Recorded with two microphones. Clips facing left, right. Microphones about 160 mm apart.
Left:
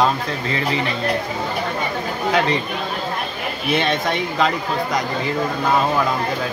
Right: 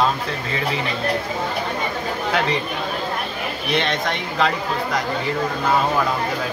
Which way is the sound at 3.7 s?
5° left (ahead or behind).